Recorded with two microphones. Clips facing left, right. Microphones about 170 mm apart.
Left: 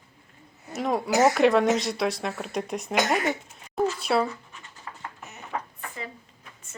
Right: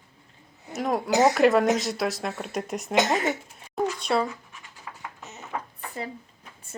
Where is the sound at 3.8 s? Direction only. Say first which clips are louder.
Left 1 dB; 5° left (ahead or behind).